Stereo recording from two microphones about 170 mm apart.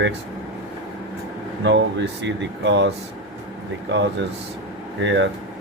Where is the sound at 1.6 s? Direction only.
90° right.